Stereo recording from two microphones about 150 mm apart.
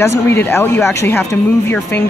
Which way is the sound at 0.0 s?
15° left (ahead or behind).